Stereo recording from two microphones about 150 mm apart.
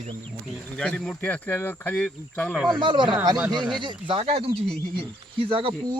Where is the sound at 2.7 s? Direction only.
30° right (ahead or behind).